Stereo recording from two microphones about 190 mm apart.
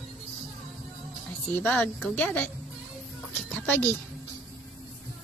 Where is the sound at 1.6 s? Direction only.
5° left (ahead or behind).